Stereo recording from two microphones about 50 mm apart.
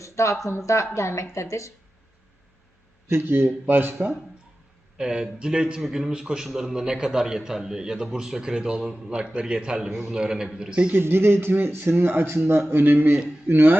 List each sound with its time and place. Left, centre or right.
0.0 s a sound: left
0.4 s speech: left
3.1 s speech: right
4.9 s a man's voice: centre
10.9 s speech: right
12.7 s speech: right